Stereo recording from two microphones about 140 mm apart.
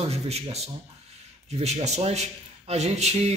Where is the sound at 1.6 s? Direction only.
50° right (ahead or behind).